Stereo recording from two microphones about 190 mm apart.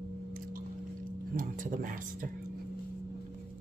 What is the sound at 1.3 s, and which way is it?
Speech, 45° right (ahead or behind).